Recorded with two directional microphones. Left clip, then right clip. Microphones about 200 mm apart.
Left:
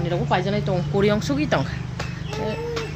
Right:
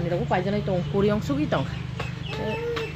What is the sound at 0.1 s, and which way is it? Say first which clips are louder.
Speech: left 3 dB; centre (ahead or behind).